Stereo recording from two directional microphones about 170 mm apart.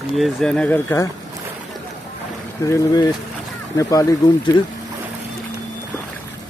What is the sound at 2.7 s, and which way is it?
Speech, 20° left (ahead or behind).